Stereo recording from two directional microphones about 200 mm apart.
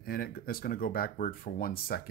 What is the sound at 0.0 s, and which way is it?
Speech, 50° left (ahead or behind).